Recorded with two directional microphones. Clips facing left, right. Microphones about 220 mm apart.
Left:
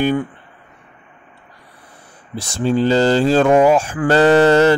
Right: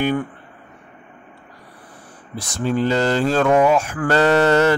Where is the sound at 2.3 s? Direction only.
30° left (ahead or behind).